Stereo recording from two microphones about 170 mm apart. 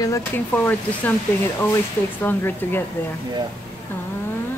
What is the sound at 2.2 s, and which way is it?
Speech, 10° left (ahead or behind).